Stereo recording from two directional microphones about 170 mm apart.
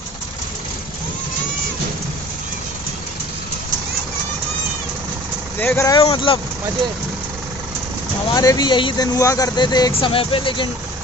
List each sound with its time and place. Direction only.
5.6 s speech: 15° left (ahead or behind)
5.9 s speech: 30° left (ahead or behind)
8.3 s speech: 25° left (ahead or behind)